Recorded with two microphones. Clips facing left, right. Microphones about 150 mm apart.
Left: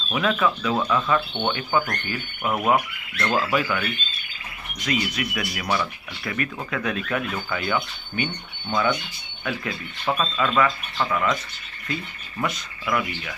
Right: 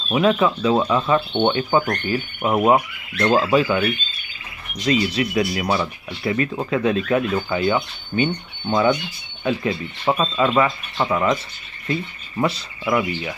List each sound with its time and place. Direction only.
0.1 s speech: 25° right (ahead or behind)